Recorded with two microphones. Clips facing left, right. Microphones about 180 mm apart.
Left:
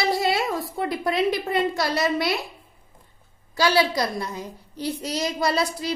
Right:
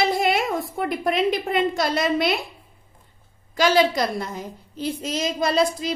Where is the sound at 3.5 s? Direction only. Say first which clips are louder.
Right 2 dB; 45° right (ahead or behind).